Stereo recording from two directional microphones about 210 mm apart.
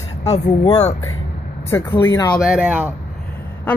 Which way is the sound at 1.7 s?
10° left (ahead or behind).